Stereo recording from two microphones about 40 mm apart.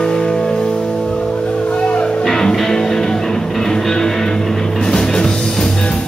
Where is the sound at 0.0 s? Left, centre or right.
Centre.